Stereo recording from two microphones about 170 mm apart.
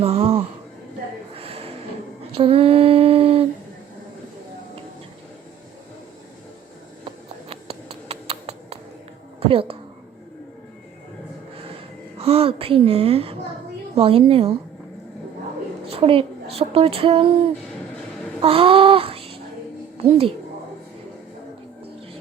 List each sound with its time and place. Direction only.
0.0 s a woman's voice: 35° right (ahead or behind)
1.4 s a sound: 35° right (ahead or behind)
2.3 s female singing: 35° right (ahead or behind)
7.5 s a sound: 35° right (ahead or behind)
9.4 s speech: 35° right (ahead or behind)
12.2 s a woman's voice: 35° right (ahead or behind)
15.9 s a woman's voice: 35° right (ahead or behind)
18.4 s a woman's voice: 35° right (ahead or behind)